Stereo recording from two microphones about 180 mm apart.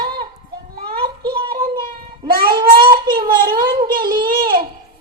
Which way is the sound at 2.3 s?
55° right (ahead or behind).